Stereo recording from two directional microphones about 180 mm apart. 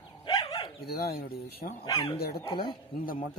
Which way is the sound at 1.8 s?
20° left (ahead or behind).